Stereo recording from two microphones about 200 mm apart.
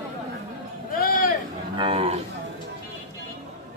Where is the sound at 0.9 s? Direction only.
45° left (ahead or behind).